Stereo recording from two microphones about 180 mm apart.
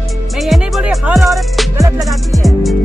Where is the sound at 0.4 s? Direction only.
Centre (ahead or behind).